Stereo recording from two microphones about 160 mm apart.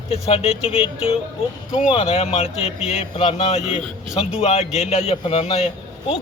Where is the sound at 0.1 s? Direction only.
40° left (ahead or behind).